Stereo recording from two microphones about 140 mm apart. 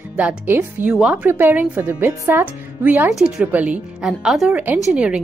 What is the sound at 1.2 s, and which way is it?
A woman's voice, 15° right (ahead or behind).